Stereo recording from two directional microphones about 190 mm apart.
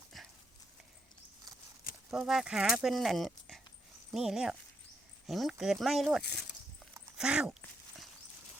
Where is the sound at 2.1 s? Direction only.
Centre (ahead or behind).